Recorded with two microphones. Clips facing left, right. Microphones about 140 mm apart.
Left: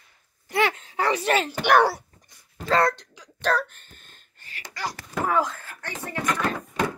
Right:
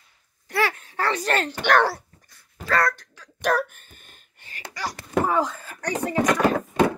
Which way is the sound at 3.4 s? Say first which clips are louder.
Right 2 dB; 10° right (ahead or behind).